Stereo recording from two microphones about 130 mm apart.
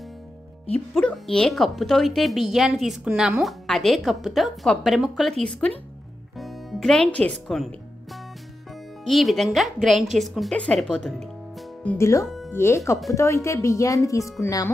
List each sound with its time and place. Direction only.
0.9 s speech: centre (ahead or behind)
9.0 s speech: centre (ahead or behind); by 14.7 s 25° left (ahead or behind)